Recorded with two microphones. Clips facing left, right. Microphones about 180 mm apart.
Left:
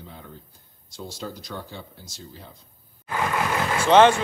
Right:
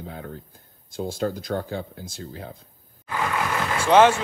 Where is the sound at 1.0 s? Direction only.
55° right (ahead or behind).